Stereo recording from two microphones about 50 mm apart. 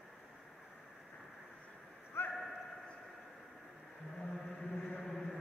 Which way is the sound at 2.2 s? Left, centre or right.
Left.